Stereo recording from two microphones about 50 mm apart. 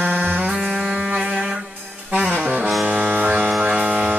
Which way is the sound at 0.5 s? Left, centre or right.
Centre.